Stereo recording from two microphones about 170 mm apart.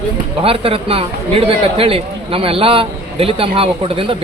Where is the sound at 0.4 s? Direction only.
35° right (ahead or behind).